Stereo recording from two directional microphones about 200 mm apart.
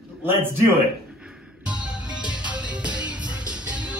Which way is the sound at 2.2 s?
5° right (ahead or behind).